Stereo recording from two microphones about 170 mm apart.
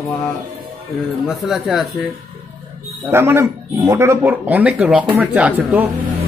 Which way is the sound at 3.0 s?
15° right (ahead or behind).